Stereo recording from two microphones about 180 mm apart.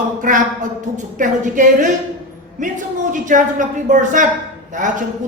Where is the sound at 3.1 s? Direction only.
45° right (ahead or behind).